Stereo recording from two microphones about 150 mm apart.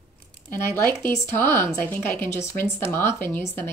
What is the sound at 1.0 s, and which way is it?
Speech, 15° left (ahead or behind).